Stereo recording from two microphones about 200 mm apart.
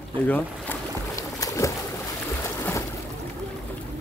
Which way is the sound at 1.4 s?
15° left (ahead or behind).